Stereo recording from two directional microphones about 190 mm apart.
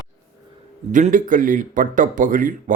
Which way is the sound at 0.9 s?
45° right (ahead or behind).